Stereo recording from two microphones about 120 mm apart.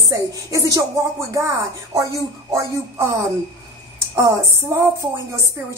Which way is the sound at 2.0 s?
25° right (ahead or behind).